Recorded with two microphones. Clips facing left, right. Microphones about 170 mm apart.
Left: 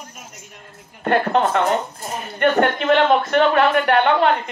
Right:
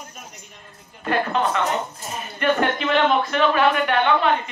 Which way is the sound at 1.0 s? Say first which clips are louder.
Left 4 dB; 60° left (ahead or behind).